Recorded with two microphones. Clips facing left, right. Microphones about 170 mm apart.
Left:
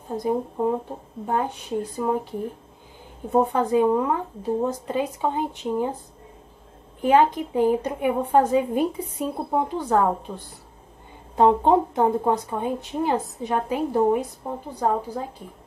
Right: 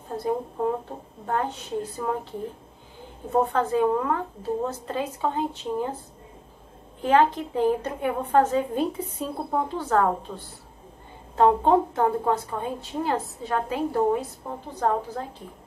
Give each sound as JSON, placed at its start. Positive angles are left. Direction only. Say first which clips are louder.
{"t": 0.1, "sound": "speech", "louder": "left 3 dB", "side_deg": 15}
{"t": 3.3, "sound": "speech", "louder": "left 2 dB", "side_deg": 15}
{"t": 7.0, "sound": "speech", "louder": "left 2 dB", "side_deg": 15}